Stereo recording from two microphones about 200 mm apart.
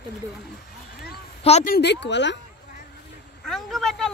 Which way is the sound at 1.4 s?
30° left (ahead or behind).